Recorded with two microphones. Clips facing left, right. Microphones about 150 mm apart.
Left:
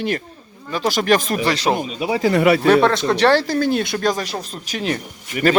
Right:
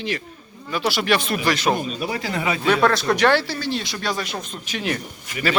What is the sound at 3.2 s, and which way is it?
Speech, 35° left (ahead or behind).